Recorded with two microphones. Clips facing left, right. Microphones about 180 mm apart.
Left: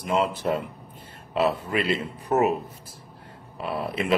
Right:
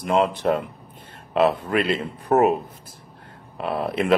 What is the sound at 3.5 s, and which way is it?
Speech, 55° right (ahead or behind).